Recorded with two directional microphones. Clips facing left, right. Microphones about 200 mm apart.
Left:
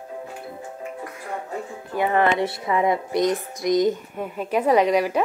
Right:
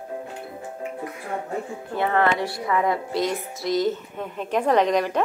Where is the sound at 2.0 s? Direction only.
15° left (ahead or behind).